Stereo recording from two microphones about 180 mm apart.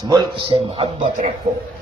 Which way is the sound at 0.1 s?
25° right (ahead or behind).